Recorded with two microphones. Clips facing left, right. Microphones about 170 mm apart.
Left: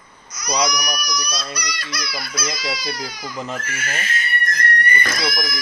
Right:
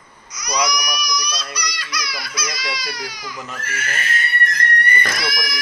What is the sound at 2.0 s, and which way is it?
Speech, 55° left (ahead or behind).